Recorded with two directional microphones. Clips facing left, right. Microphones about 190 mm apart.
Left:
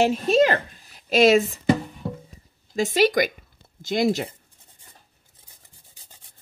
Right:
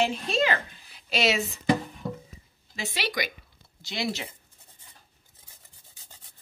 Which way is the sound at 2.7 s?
45° left (ahead or behind).